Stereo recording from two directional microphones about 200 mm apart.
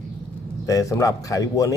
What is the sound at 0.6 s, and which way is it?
Speech, 15° left (ahead or behind).